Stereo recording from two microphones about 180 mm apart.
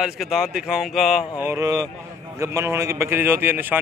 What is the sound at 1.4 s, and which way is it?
A man's voice, 15° right (ahead or behind).